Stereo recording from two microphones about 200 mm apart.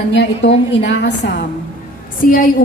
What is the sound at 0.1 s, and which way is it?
A woman's voice, 60° left (ahead or behind).